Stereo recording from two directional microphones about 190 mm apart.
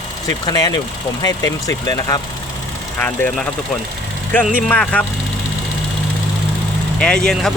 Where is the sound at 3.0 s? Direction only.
10° left (ahead or behind).